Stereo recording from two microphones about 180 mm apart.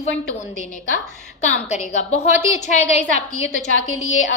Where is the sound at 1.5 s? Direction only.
45° left (ahead or behind).